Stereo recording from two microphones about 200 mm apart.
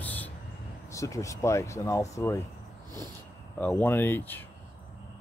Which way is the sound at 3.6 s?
10° left (ahead or behind).